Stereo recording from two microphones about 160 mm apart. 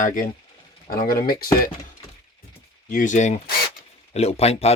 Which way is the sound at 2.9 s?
55° left (ahead or behind).